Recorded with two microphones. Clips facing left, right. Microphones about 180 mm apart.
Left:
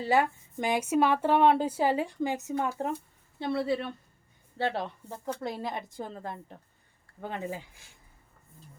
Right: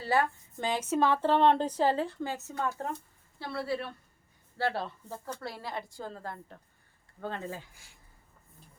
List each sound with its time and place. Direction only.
0.0 s a woman's voice: 15° left (ahead or behind)